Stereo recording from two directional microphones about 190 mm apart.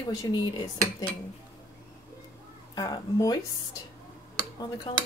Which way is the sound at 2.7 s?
20° left (ahead or behind).